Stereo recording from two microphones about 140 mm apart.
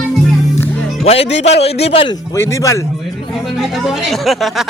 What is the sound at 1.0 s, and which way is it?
A man's voice, 45° left (ahead or behind).